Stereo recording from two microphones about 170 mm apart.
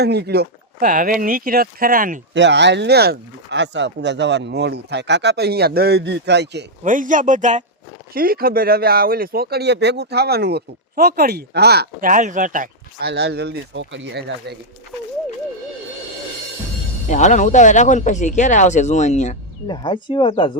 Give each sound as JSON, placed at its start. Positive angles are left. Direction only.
{"t": 0.0, "sound": "speech", "side_deg": -75}
{"t": 2.3, "sound": "speech", "side_deg": -90}
{"t": 6.8, "sound": "speech", "side_deg": -50}
{"t": 8.1, "sound": "speech", "side_deg": -60}
{"t": 13.0, "sound": "speech", "side_deg": -75}
{"t": 17.1, "sound": "speech", "side_deg": 45}
{"t": 19.6, "sound": "speech", "side_deg": 25}